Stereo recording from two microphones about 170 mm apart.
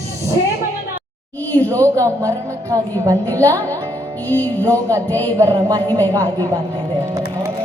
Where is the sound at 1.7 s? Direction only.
15° right (ahead or behind).